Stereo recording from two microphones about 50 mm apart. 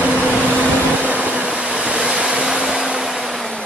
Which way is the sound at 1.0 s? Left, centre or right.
Right.